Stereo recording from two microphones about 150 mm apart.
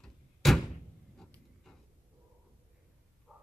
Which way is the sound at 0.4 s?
Centre (ahead or behind).